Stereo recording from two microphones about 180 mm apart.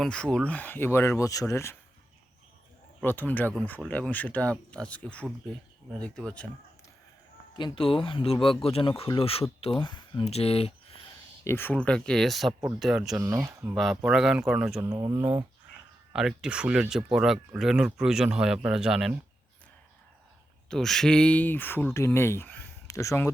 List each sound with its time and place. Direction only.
0.0 s speech: 5° left (ahead or behind)
3.0 s speech: 10° left (ahead or behind)
7.5 s speech: 25° left (ahead or behind)
11.4 s speech: 10° left (ahead or behind)
13.1 s speech: 15° right (ahead or behind)
13.7 s speech: centre (ahead or behind)
14.8 s speech: 20° right (ahead or behind)
16.1 s speech: 5° right (ahead or behind)
20.7 s speech: centre (ahead or behind)